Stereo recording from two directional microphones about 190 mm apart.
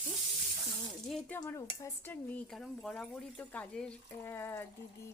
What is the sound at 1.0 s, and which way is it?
Speech, centre (ahead or behind).